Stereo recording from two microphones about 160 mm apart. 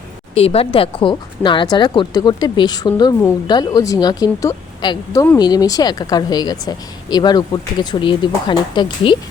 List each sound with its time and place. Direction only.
0.3 s speech: 35° left (ahead or behind)